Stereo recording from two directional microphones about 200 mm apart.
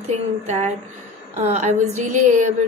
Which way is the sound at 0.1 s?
35° right (ahead or behind).